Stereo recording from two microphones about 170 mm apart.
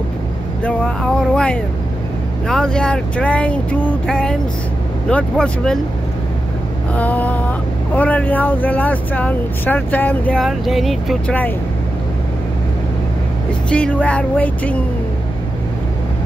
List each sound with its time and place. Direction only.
0.7 s speech: 5° left (ahead or behind)
7.0 s a sound: 10° left (ahead or behind)
7.9 s speech: 10° left (ahead or behind)
13.7 s speech: 5° left (ahead or behind)